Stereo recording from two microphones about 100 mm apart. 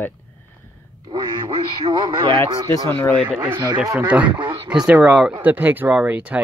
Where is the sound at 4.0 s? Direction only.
15° right (ahead or behind).